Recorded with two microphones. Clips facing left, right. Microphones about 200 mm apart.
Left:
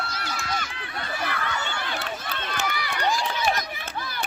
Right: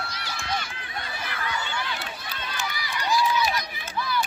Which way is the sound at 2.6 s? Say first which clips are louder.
Left 5 dB; 60° left (ahead or behind).